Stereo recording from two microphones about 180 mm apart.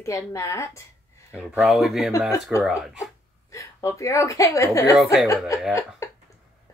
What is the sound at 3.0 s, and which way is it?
A woman's voice, 15° left (ahead or behind).